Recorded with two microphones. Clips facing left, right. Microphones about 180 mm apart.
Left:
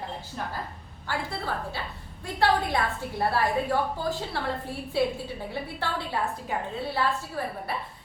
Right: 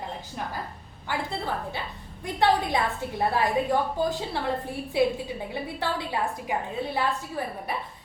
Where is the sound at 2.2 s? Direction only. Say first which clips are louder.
Right 1 dB; 20° right (ahead or behind).